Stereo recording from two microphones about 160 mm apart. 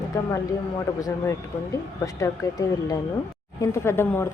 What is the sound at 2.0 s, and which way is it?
A woman's voice, 20° left (ahead or behind).